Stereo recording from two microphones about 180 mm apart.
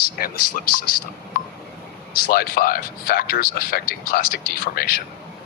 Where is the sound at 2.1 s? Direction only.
55° left (ahead or behind).